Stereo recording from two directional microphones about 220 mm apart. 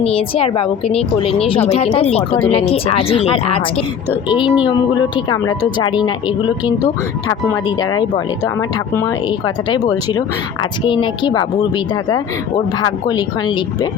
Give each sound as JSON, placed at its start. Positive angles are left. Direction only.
{"t": 0.0, "sound": "a woman's voice", "side_deg": 25}
{"t": 9.6, "sound": "a woman's voice", "side_deg": 20}